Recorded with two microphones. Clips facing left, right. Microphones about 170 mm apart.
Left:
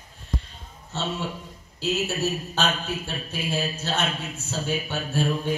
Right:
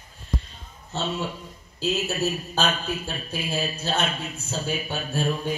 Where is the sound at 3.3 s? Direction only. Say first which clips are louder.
Left 1 dB; 15° right (ahead or behind).